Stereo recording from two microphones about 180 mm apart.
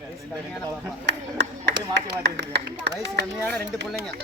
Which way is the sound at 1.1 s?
70° right (ahead or behind).